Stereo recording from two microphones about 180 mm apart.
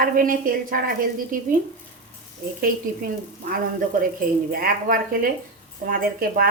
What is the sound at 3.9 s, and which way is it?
A woman's voice, 50° right (ahead or behind).